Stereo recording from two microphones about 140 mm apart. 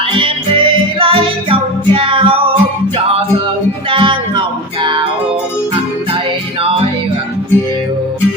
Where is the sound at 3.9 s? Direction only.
35° right (ahead or behind).